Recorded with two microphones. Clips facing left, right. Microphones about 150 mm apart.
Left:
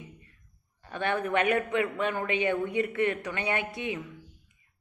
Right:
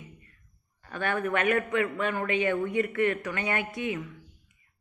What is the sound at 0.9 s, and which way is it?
A woman's voice, 20° left (ahead or behind).